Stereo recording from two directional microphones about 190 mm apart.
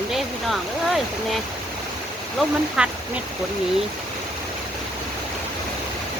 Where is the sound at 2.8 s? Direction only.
5° right (ahead or behind).